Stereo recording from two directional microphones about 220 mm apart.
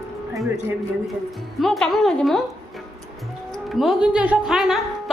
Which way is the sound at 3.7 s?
Centre (ahead or behind).